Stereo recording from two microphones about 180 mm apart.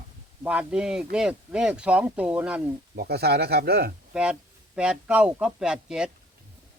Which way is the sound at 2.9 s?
60° right (ahead or behind).